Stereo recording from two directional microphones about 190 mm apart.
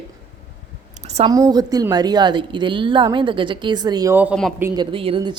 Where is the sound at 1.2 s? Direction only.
20° right (ahead or behind).